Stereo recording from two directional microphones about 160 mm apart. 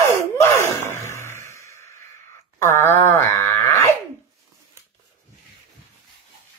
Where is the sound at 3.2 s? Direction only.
15° left (ahead or behind).